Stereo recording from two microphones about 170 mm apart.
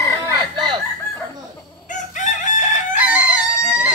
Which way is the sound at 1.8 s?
45° left (ahead or behind).